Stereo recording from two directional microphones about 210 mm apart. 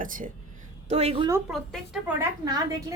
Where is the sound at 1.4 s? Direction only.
5° right (ahead or behind).